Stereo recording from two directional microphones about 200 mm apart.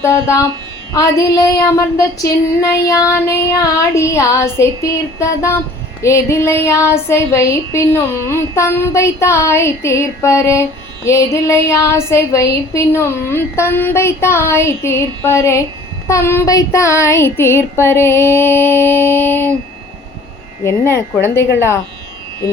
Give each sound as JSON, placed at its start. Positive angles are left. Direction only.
{"t": 0.0, "sound": "child singing", "side_deg": 15}
{"t": 20.7, "sound": "child singing", "side_deg": 10}